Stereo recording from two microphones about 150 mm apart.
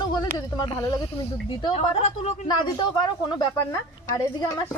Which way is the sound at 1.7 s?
45° left (ahead or behind).